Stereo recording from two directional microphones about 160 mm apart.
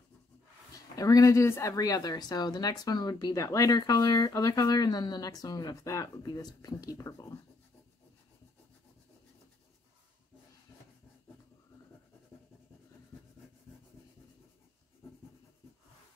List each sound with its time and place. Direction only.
0.9 s a woman's voice: 20° left (ahead or behind)